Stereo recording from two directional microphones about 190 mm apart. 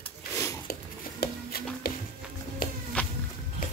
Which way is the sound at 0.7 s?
55° left (ahead or behind).